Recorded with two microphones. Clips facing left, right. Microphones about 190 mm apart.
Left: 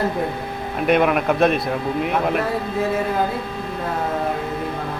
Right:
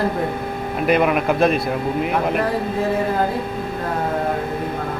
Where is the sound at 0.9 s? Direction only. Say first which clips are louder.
Even; centre (ahead or behind).